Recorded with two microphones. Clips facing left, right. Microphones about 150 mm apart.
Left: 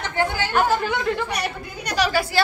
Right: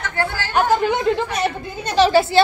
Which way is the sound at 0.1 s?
15° left (ahead or behind).